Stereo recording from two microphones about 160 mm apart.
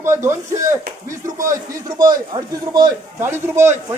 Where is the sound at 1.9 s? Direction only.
25° right (ahead or behind).